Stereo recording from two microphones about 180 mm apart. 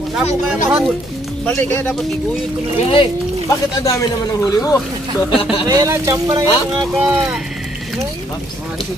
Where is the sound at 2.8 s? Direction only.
35° left (ahead or behind).